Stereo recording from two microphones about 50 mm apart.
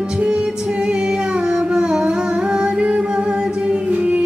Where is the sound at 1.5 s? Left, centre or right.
Centre.